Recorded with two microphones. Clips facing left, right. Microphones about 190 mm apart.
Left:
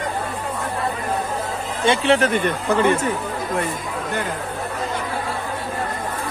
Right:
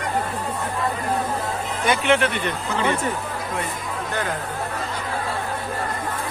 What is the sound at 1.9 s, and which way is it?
Speech, 35° left (ahead or behind).